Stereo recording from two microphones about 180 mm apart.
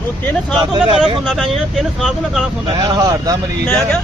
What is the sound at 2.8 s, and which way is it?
Speech, 20° right (ahead or behind).